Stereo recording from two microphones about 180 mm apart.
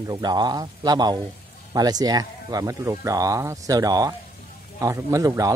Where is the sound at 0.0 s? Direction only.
20° right (ahead or behind).